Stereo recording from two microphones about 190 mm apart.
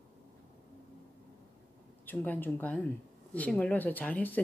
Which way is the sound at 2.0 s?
10° left (ahead or behind).